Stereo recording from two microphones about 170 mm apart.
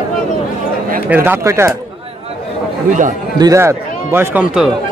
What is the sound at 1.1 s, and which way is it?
Speech, 10° right (ahead or behind).